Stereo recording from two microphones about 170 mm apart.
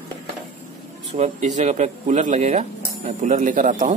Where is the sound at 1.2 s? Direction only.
45° right (ahead or behind).